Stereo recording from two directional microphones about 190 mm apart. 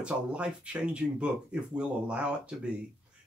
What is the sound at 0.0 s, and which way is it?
Speech, 5° right (ahead or behind).